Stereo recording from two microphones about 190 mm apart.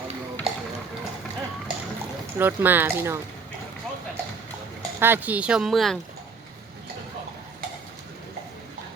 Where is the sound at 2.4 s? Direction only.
10° right (ahead or behind).